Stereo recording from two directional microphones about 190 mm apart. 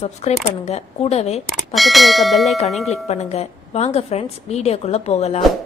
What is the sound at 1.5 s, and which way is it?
Speech, centre (ahead or behind).